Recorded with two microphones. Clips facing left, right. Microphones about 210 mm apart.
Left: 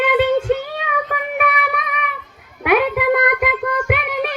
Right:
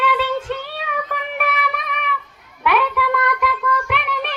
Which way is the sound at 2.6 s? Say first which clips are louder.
Left 4 dB; 50° left (ahead or behind).